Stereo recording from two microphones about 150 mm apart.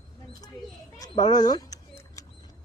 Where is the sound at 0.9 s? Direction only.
25° left (ahead or behind).